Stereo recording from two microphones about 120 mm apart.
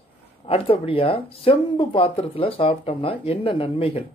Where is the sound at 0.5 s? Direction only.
50° left (ahead or behind).